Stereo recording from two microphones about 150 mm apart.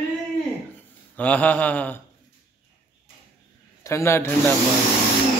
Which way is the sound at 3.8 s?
20° left (ahead or behind).